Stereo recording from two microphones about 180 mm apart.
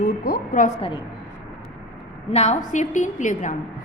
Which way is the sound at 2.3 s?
40° left (ahead or behind).